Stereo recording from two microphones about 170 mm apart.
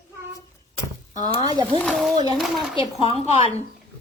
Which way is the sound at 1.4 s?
25° right (ahead or behind).